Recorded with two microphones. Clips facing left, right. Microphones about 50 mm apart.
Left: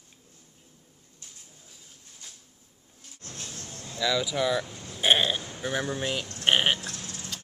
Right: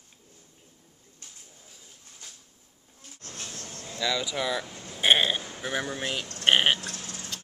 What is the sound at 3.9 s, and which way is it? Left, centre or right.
Speech, centre.